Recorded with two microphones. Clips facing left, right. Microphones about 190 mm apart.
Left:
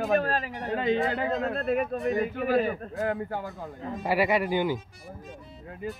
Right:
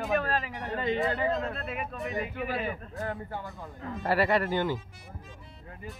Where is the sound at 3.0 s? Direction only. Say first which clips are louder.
Left 6 dB; 90° left.